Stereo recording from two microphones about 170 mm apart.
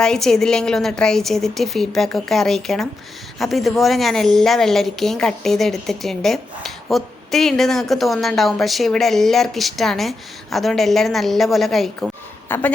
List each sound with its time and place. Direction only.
0.0 s a woman's voice: 5° left (ahead or behind)
12.5 s a woman's voice: 10° left (ahead or behind)